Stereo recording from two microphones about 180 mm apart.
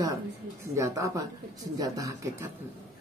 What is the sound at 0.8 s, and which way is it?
Speech, 15° right (ahead or behind).